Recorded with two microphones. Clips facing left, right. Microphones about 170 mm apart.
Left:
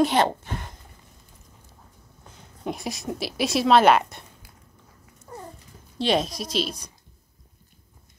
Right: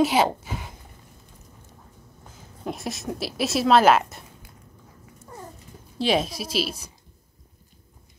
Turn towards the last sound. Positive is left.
turn(degrees=-5)  # may be behind; listen again after turning